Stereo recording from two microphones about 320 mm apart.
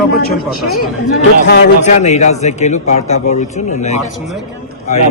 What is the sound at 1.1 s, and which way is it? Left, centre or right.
A man's voice, left.